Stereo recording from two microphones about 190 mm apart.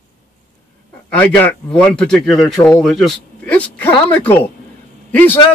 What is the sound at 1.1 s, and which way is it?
A man's voice, 5° left (ahead or behind).